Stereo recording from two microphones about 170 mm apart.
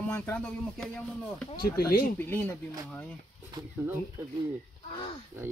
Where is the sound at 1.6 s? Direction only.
65° left (ahead or behind).